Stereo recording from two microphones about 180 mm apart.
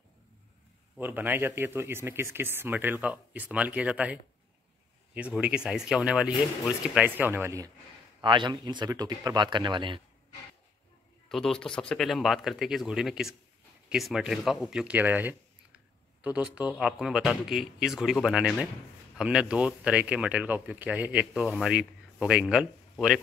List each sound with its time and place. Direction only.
0.9 s speech: 10° right (ahead or behind)
8.2 s speech: 25° right (ahead or behind)
11.2 s speech: centre (ahead or behind)